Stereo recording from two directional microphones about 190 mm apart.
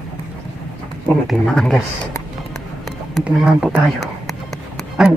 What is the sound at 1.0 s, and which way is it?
Speech, centre (ahead or behind).